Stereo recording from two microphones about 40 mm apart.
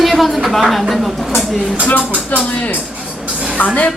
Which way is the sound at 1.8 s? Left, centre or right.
Left.